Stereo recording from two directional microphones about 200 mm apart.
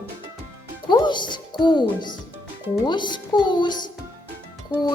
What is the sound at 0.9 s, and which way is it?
A child's voice, 20° left (ahead or behind).